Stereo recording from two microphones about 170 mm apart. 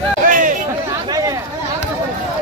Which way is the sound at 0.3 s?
50° right (ahead or behind).